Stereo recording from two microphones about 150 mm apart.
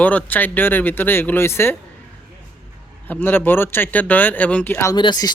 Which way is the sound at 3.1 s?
15° left (ahead or behind).